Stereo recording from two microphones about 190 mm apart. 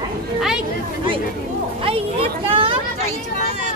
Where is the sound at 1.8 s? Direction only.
30° right (ahead or behind).